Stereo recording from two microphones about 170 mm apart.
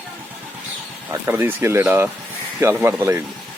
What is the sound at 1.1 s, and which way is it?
Speech, 15° right (ahead or behind).